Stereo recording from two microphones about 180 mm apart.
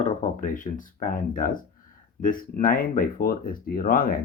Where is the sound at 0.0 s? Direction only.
45° left (ahead or behind).